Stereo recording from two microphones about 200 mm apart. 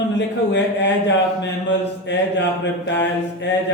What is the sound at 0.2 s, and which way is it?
Speech, 60° left (ahead or behind).